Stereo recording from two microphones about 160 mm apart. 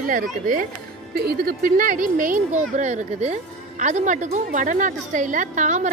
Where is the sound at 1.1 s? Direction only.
70° right (ahead or behind).